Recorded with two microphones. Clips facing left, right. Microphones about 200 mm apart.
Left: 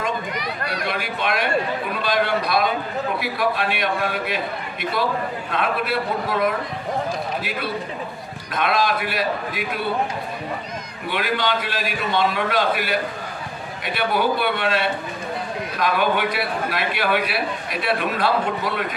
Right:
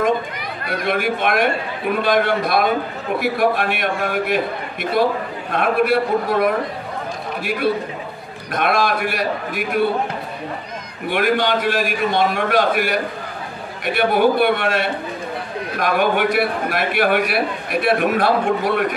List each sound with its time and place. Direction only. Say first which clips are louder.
0.0 s a man's voice: right 6 dB; 55° right (ahead or behind)
5.5 s a man's voice: right 7 dB; 50° right (ahead or behind)
8.5 s a man's voice: right 3 dB; 50° right (ahead or behind)
11.1 s a man's voice: right 5 dB; 50° right (ahead or behind)
13.9 s a man's voice: right 6 dB; 50° right (ahead or behind)